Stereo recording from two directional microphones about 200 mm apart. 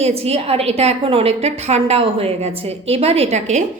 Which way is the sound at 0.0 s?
30° right (ahead or behind).